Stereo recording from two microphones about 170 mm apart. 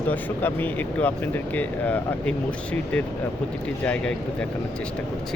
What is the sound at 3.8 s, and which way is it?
Speech, 5° left (ahead or behind).